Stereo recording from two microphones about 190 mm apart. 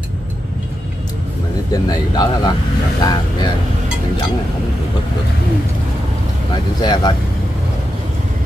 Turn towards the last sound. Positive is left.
turn(degrees=20)  # may be behind; listen again after turning